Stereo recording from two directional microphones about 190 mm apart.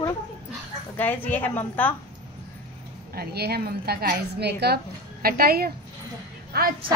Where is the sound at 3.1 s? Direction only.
55° right (ahead or behind).